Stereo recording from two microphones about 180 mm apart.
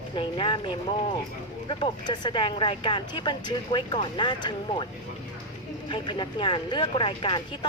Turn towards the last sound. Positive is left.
turn(degrees=25)  # may be behind; listen again after turning